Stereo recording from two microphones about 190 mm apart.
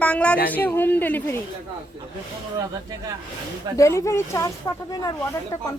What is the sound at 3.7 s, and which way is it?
Speech, 15° left (ahead or behind).